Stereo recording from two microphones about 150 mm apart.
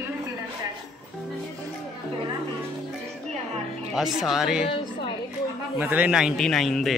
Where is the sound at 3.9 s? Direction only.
Centre (ahead or behind).